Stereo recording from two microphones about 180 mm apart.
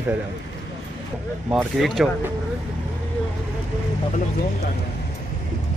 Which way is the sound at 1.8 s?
Centre (ahead or behind).